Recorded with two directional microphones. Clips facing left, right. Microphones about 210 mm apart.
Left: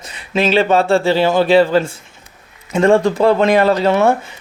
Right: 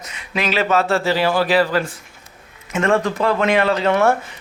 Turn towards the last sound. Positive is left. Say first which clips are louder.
# left 4 dB
turn(degrees=40)  # may be behind; listen again after turning